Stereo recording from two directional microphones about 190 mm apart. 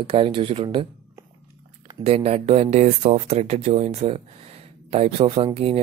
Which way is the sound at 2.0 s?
35° right (ahead or behind).